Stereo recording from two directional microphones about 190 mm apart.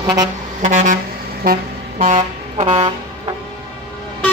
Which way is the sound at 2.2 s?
30° right (ahead or behind).